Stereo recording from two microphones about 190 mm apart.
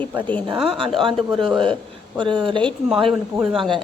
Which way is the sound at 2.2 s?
25° right (ahead or behind).